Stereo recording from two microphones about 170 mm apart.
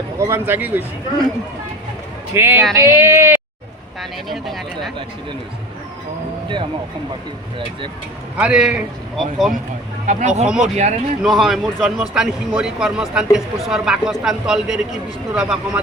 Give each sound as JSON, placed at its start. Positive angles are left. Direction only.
{"t": 0.2, "sound": "speech", "side_deg": -15}
{"t": 2.3, "sound": "speech", "side_deg": -15}
{"t": 4.3, "sound": "a man's voice", "side_deg": 0}
{"t": 8.4, "sound": "a man's voice", "side_deg": -5}
{"t": 10.1, "sound": "speech", "side_deg": -45}
{"t": 11.2, "sound": "a man's voice", "side_deg": 0}